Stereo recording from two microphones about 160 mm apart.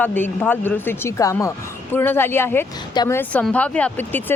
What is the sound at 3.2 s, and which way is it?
Speech, 10° left (ahead or behind).